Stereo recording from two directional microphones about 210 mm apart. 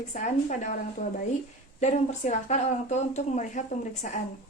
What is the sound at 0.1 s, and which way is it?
Speech, 35° left (ahead or behind).